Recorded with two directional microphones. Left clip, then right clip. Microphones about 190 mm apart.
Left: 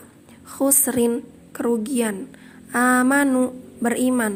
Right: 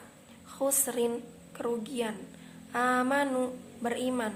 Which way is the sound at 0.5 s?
45° left (ahead or behind).